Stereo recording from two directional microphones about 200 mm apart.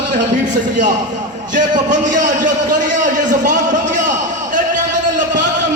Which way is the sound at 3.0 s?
40° right (ahead or behind).